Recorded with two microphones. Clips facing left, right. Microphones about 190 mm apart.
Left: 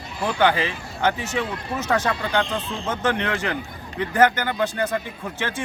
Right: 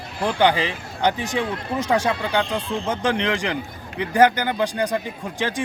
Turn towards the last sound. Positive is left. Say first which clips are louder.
# right 3 dB
turn(degrees=-15)  # may be behind; listen again after turning